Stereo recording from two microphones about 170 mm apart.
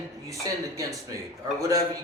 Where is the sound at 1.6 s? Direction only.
20° right (ahead or behind).